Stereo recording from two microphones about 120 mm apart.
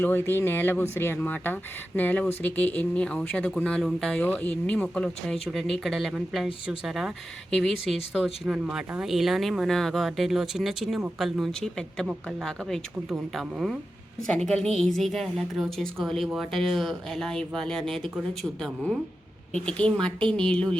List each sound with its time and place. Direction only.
0.0 s speech: 15° left (ahead or behind)